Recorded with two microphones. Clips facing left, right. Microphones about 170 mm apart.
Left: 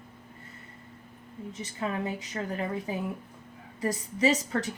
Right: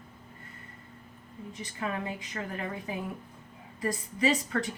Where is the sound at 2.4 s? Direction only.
30° left (ahead or behind).